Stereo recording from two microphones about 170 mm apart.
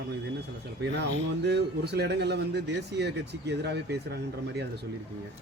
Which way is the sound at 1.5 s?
75° right (ahead or behind).